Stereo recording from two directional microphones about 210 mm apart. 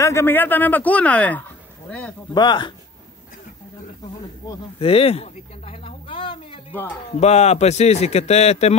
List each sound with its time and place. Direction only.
0.0 s speech: 10° left (ahead or behind)
2.3 s speech: 20° left (ahead or behind)
4.5 s a man's voice: 25° left (ahead or behind)